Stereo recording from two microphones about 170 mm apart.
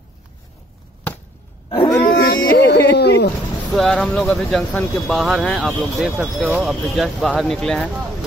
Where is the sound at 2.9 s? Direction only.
80° left.